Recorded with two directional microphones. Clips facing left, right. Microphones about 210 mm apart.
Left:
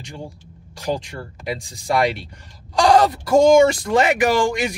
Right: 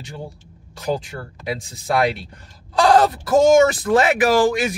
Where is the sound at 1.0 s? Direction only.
Centre (ahead or behind).